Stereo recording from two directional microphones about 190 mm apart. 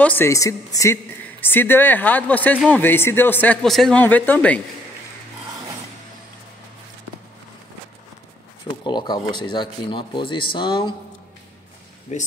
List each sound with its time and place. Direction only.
0.0 s speech: 10° left (ahead or behind)
8.8 s speech: 25° left (ahead or behind)
12.1 s speech: 40° left (ahead or behind)